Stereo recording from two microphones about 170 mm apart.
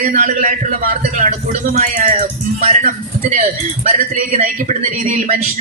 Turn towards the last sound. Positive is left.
turn(degrees=-45)  # may be behind; listen again after turning